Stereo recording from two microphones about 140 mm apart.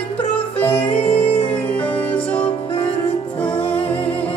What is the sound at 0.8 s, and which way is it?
Music, 10° left (ahead or behind).